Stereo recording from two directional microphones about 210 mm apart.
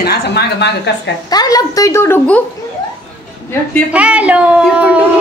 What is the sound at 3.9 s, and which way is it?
Speech, 5° right (ahead or behind).